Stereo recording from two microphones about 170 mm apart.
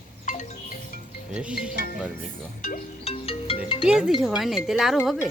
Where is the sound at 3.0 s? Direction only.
35° left (ahead or behind).